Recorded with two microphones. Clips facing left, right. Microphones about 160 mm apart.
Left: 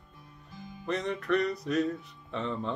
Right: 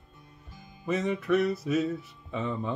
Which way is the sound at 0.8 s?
5° right (ahead or behind).